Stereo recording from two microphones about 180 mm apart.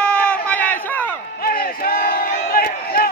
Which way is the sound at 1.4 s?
55° left (ahead or behind).